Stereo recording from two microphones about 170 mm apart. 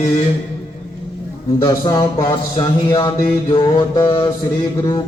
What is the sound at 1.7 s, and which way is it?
Mantra, 25° left (ahead or behind).